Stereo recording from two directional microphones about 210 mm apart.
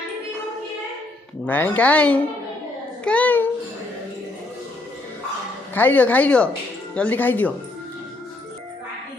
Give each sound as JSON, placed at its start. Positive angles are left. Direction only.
{"t": 1.5, "sound": "speech", "side_deg": 10}
{"t": 5.7, "sound": "speech", "side_deg": 10}